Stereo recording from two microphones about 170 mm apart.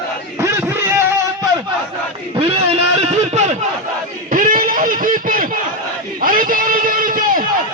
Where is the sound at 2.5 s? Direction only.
35° right (ahead or behind).